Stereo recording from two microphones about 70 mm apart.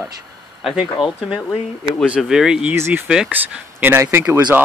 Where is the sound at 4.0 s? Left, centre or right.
Right.